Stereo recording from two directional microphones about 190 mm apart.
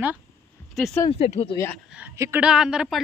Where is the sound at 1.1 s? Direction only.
30° left (ahead or behind).